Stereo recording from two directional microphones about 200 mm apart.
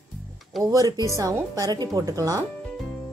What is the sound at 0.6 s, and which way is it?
Speech, 20° right (ahead or behind).